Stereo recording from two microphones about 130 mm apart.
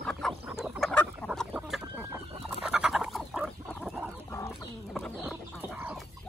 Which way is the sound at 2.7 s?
5° right (ahead or behind).